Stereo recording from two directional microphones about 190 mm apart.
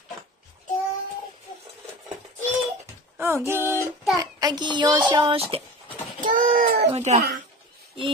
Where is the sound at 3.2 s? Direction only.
15° right (ahead or behind).